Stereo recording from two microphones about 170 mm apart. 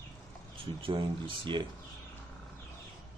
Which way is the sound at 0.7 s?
30° right (ahead or behind).